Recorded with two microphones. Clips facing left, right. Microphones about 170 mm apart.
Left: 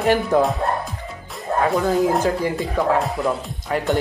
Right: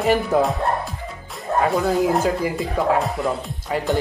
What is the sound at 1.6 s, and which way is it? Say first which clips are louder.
Speech: left 1 dB; centre (ahead or behind).